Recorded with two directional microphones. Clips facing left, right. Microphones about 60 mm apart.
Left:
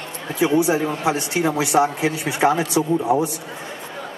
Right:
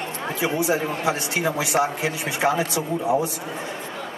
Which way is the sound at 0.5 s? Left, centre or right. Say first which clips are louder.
Left 4 dB; left.